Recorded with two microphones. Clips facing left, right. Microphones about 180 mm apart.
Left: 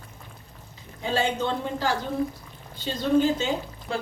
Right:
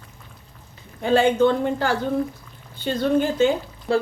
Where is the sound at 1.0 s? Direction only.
55° right (ahead or behind).